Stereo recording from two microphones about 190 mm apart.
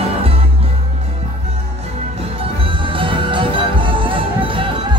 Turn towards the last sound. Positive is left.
turn(degrees=-25)  # may be behind; listen again after turning